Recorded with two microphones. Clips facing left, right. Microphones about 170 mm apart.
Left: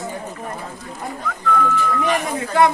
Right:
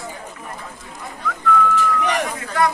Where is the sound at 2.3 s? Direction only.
25° left (ahead or behind).